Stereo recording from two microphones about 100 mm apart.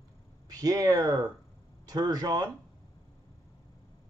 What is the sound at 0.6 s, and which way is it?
Speech, 35° right (ahead or behind).